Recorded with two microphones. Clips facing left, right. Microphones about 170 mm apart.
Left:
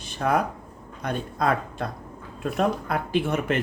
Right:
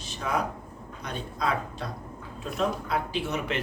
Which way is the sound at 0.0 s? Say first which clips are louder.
Left 6 dB; 55° left (ahead or behind).